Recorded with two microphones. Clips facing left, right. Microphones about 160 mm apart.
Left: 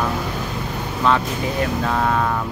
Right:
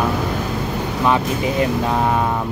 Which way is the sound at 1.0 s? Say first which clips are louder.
Right 1 dB; 15° right (ahead or behind).